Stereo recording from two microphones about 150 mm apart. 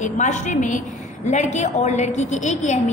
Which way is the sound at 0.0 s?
55° left (ahead or behind).